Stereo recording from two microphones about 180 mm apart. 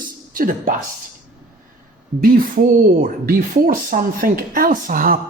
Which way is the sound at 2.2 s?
50° right (ahead or behind).